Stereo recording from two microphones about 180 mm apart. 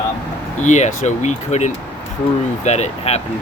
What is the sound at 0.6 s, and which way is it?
Speech, 40° left (ahead or behind).